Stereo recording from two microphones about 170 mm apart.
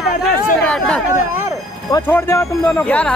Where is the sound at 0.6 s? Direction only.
5° left (ahead or behind).